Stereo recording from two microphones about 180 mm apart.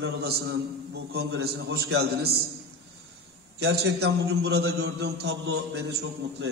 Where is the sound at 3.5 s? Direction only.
65° right (ahead or behind).